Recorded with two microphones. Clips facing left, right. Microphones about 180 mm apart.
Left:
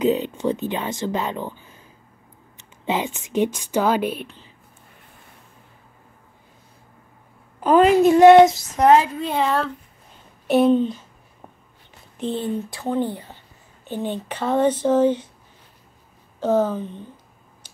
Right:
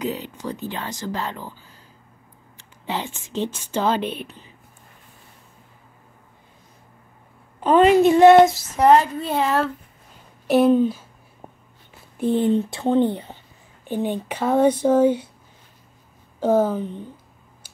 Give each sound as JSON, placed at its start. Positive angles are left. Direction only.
{"t": 0.0, "sound": "speech", "side_deg": 20}
{"t": 7.6, "sound": "a woman's voice", "side_deg": 5}
{"t": 12.2, "sound": "speech", "side_deg": -10}
{"t": 12.4, "sound": "speech", "side_deg": -25}
{"t": 16.3, "sound": "speech", "side_deg": -10}